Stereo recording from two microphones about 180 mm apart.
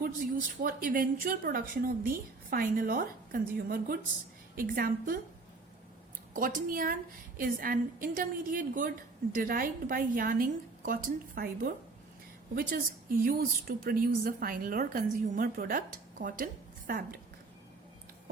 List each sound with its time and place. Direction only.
0.0 s a woman's voice: 50° right (ahead or behind)
6.3 s a woman's voice: 50° right (ahead or behind)